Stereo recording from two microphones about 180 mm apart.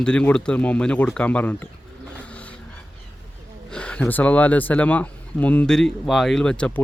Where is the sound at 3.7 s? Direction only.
5° left (ahead or behind).